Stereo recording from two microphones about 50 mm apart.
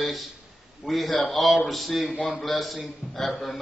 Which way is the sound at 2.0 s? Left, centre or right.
Left.